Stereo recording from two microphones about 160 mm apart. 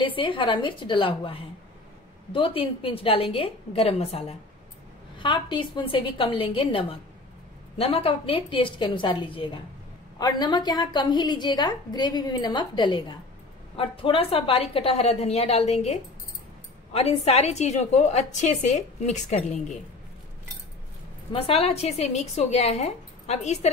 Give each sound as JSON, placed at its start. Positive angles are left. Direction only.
{"t": 0.0, "sound": "a woman's voice", "side_deg": 30}
{"t": 21.3, "sound": "a woman's voice", "side_deg": 40}